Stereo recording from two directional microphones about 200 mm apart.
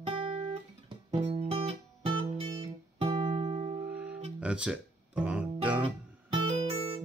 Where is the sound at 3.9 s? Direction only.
5° right (ahead or behind).